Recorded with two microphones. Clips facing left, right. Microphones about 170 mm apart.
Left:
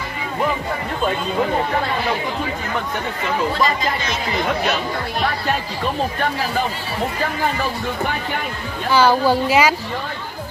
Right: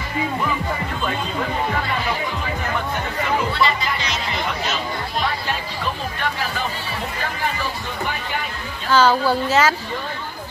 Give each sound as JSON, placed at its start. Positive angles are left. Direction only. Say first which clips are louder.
{"t": 3.5, "sound": "speech", "louder": "left 2 dB", "side_deg": 40}
{"t": 8.9, "sound": "a woman's voice", "louder": "left 1 dB", "side_deg": 15}